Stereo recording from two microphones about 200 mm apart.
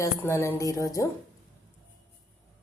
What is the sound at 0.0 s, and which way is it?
Speech, 15° left (ahead or behind).